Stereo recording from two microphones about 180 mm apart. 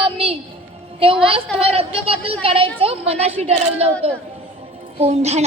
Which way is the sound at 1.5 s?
30° right (ahead or behind).